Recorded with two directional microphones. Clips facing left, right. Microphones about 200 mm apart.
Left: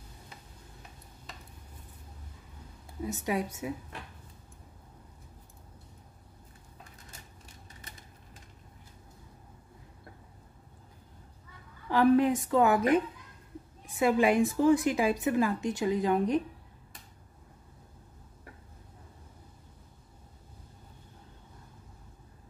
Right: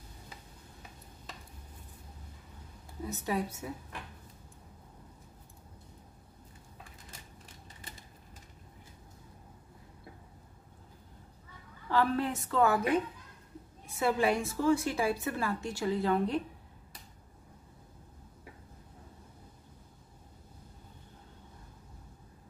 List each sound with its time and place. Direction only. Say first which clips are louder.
3.1 s a woman's voice: left 2 dB; 15° left (ahead or behind)
11.9 s a woman's voice: left 7 dB; 15° left (ahead or behind)